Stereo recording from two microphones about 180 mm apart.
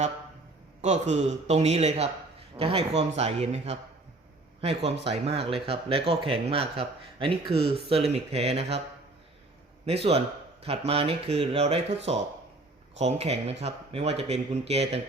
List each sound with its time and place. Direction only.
0.8 s speech: 40° right (ahead or behind)
9.8 s speech: 35° right (ahead or behind)